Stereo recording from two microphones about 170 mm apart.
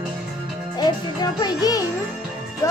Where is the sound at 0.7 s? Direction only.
25° left (ahead or behind).